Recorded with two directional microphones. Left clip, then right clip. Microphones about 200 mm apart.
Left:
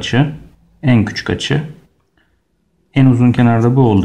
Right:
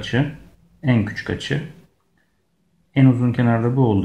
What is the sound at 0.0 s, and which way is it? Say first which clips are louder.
Speech: left 6 dB; 20° left (ahead or behind).